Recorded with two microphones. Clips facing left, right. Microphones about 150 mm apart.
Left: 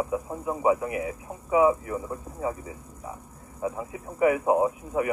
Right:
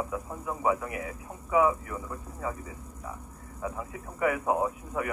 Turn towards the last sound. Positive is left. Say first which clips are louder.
# left 5 dB
turn(degrees=20)  # may be behind; listen again after turning